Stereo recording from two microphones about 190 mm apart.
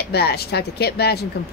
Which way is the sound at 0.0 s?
60° left (ahead or behind).